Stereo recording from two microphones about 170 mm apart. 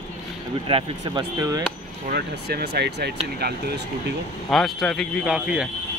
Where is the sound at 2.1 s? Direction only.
70° right (ahead or behind).